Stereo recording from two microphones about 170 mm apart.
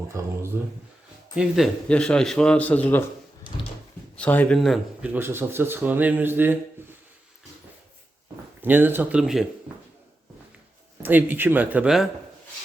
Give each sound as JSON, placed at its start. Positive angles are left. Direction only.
{"t": 0.1, "sound": "speech", "side_deg": -15}
{"t": 1.4, "sound": "speech", "side_deg": 0}
{"t": 4.2, "sound": "speech", "side_deg": 10}
{"t": 5.1, "sound": "speech", "side_deg": -15}
{"t": 8.6, "sound": "speech", "side_deg": -10}
{"t": 11.0, "sound": "speech", "side_deg": -10}